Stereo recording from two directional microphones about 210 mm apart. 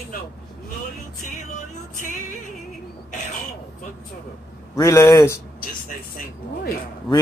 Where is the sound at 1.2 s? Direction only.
35° left (ahead or behind).